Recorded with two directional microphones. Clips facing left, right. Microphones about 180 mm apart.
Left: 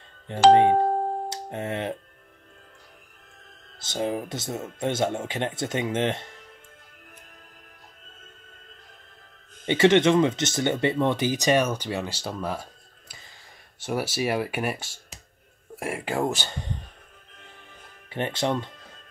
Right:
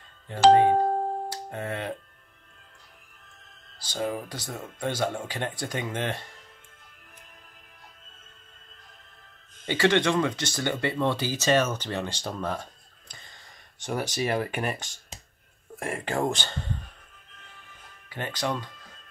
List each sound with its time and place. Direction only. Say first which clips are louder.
0.3 s speech: left 2 dB; 20° left (ahead or behind)
1.3 s music: left 2 dB; 20° left (ahead or behind)
3.8 s speech: left 3 dB; 20° left (ahead or behind)
9.7 s speech: left 5 dB; 20° left (ahead or behind)
13.7 s speech: left 2 dB; 5° left (ahead or behind)
18.1 s speech: left 4 dB; 25° left (ahead or behind)